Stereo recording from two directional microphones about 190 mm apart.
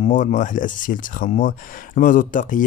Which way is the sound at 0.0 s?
40° left (ahead or behind).